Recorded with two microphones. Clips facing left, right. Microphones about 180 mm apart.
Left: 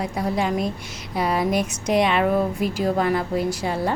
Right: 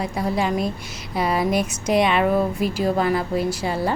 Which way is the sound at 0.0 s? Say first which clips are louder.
Right 1 dB; centre (ahead or behind).